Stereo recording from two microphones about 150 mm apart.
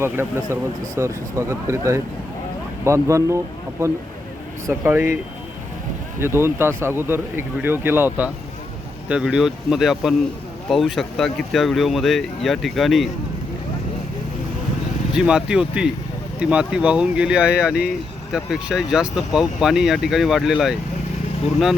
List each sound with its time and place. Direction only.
0.0 s speech: 15° right (ahead or behind)
4.7 s speech: 15° right (ahead or behind)
15.1 s speech: 5° right (ahead or behind)